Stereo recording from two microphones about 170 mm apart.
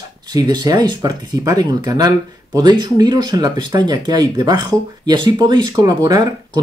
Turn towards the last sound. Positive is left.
turn(degrees=-25)  # may be behind; listen again after turning